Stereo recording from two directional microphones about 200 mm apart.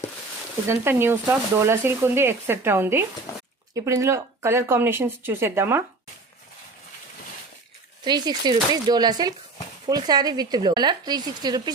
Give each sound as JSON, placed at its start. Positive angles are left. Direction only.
{"t": 0.7, "sound": "speech", "side_deg": -10}
{"t": 8.0, "sound": "speech", "side_deg": -20}